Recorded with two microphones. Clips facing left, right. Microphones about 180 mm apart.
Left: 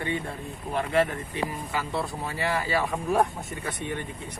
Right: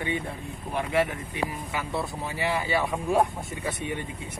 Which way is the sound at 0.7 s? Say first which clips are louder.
Left 1 dB; 15° right (ahead or behind).